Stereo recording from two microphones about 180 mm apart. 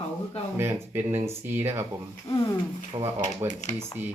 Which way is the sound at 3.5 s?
40° left (ahead or behind).